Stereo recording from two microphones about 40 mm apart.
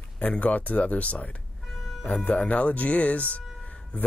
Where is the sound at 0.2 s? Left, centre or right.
Left.